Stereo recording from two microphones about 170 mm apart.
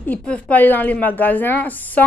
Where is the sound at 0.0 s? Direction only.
10° left (ahead or behind).